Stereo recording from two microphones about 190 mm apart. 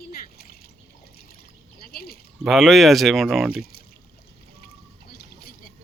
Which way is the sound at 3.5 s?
55° left (ahead or behind).